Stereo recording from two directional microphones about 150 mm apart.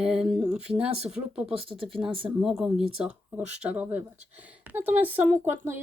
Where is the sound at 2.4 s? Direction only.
Centre (ahead or behind).